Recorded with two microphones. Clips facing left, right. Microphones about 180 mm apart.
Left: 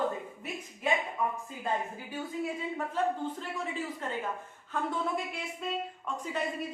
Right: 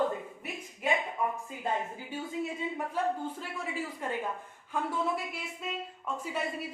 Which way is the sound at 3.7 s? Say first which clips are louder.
Right 4 dB; 10° right (ahead or behind).